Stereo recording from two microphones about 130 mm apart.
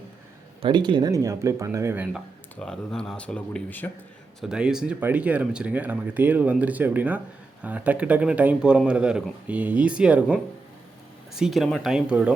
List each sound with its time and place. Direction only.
0.6 s speech: 35° right (ahead or behind); by 2.0 s 20° right (ahead or behind)
2.6 s speech: 5° left (ahead or behind)
4.4 s speech: 5° right (ahead or behind)